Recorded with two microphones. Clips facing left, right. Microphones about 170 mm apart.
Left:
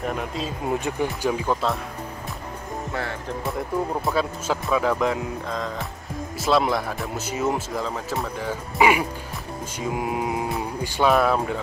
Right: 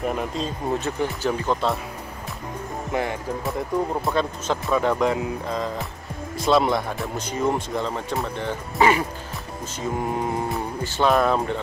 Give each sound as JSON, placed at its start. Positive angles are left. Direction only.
{"t": 0.1, "sound": "speech", "side_deg": 0}
{"t": 0.7, "sound": "speech", "side_deg": 15}
{"t": 2.9, "sound": "speech", "side_deg": -15}
{"t": 3.4, "sound": "speech", "side_deg": 0}
{"t": 9.8, "sound": "music", "side_deg": 10}
{"t": 11.1, "sound": "speech", "side_deg": 5}